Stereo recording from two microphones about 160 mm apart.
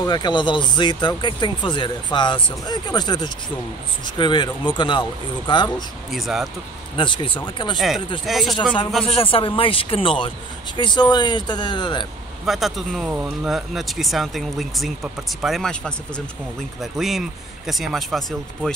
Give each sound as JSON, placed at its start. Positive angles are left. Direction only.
{"t": 0.0, "sound": "speech", "side_deg": 25}
{"t": 6.1, "sound": "speech", "side_deg": 0}
{"t": 7.0, "sound": "speech", "side_deg": 30}
{"t": 7.7, "sound": "speech", "side_deg": 0}
{"t": 9.0, "sound": "speech", "side_deg": 35}
{"t": 12.4, "sound": "speech", "side_deg": 0}